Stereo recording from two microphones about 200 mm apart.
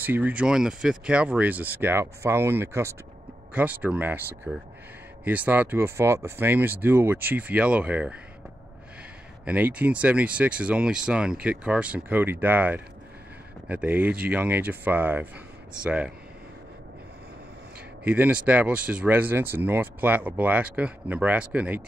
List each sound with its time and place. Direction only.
0.0 s speech: 10° right (ahead or behind)
9.4 s speech: 5° right (ahead or behind)
18.0 s speech: 5° right (ahead or behind)